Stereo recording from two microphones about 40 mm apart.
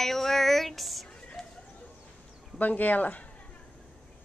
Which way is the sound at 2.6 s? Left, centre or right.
Left.